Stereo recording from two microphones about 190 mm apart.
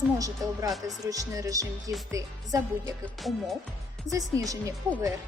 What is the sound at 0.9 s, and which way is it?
A woman's voice, 20° right (ahead or behind).